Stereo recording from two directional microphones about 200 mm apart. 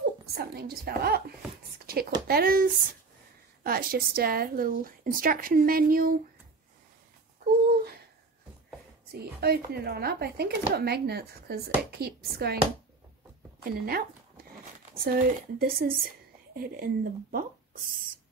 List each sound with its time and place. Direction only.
0.3 s a woman's voice: 50° right (ahead or behind)
9.1 s a woman's voice: 50° right (ahead or behind)
13.7 s a woman's voice: 50° right (ahead or behind)